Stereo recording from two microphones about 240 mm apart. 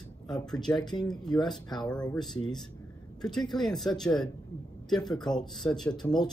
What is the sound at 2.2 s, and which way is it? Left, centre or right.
Speech, centre.